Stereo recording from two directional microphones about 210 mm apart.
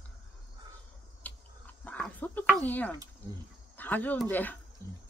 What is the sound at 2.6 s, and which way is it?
Speech, 10° left (ahead or behind).